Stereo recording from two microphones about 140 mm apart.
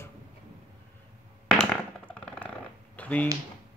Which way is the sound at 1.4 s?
5° left (ahead or behind).